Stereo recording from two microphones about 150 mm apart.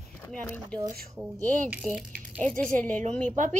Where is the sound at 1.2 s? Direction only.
10° right (ahead or behind).